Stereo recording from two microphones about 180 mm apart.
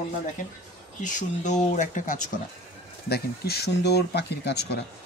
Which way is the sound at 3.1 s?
60° left (ahead or behind).